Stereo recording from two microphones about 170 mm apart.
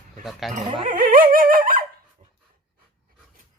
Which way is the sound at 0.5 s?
50° right (ahead or behind).